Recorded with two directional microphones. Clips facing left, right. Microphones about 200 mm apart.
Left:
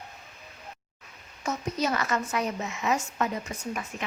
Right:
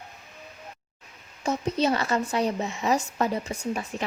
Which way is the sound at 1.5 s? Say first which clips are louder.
Right 4 dB; 30° right (ahead or behind).